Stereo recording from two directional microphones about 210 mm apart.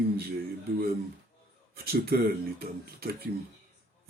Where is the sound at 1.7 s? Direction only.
45° right (ahead or behind).